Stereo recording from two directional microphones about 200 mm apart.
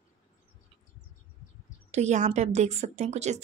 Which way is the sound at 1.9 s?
35° right (ahead or behind).